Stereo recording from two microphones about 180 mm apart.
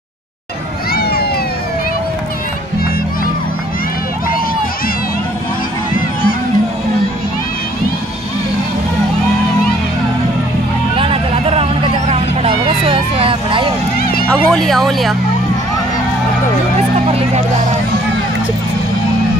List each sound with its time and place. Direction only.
0.9 s a sound: 60° left (ahead or behind)
11.0 s vehicle: 30° right (ahead or behind)
14.2 s speech: 5° left (ahead or behind)
17.1 s music: 35° right (ahead or behind)